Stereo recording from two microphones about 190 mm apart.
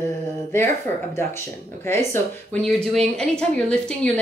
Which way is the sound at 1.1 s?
10° left (ahead or behind).